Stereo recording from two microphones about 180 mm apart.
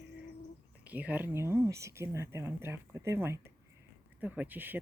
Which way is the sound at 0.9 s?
10° right (ahead or behind).